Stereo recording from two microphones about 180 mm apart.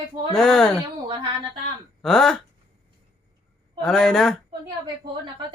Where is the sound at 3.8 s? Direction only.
Centre (ahead or behind).